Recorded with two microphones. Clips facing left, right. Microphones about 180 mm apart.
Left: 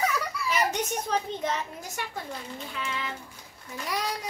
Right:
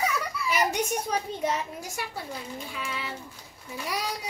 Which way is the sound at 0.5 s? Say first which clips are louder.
Right 1 dB; 10° right (ahead or behind).